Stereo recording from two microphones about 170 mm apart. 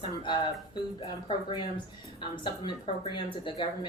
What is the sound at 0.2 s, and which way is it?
A woman's voice, 30° left (ahead or behind).